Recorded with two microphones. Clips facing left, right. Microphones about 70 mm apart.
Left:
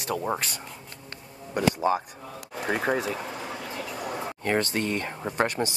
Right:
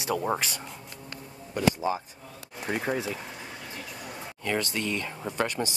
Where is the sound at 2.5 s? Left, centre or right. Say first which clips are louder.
Left 3 dB; left.